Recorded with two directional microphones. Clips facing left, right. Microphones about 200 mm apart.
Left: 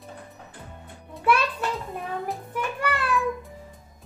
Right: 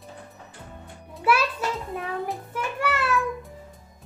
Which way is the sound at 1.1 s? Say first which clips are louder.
Even; 5° right (ahead or behind).